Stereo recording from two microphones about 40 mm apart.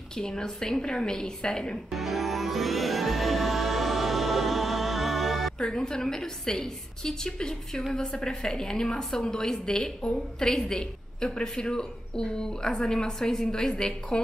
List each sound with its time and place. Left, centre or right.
0.2 s a woman's voice: centre
1.9 s music: centre
5.8 s a woman's voice: centre